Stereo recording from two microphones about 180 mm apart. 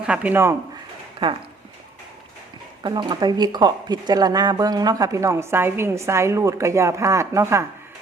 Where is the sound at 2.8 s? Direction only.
25° right (ahead or behind).